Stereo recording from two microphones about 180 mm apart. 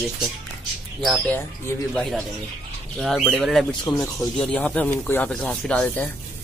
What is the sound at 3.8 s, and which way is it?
Speech, 25° left (ahead or behind).